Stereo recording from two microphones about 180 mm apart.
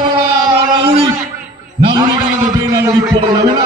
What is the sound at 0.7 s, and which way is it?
Speech, 25° right (ahead or behind).